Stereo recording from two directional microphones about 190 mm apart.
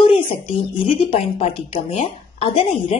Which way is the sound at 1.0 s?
30° left (ahead or behind).